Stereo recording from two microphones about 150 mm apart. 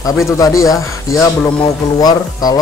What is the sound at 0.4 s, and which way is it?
Speech, 20° left (ahead or behind).